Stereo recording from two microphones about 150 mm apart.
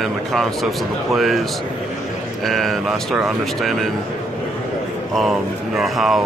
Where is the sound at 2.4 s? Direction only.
Centre (ahead or behind).